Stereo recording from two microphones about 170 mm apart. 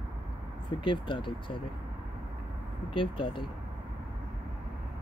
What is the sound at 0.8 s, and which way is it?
Speech, 30° left (ahead or behind).